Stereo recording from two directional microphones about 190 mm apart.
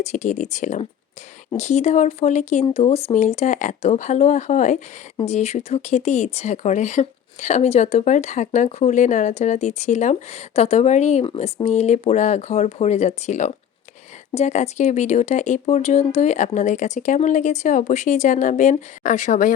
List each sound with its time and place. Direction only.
0.0 s speech: 40° left (ahead or behind)